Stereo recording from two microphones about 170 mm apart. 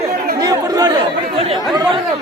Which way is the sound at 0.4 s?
20° right (ahead or behind).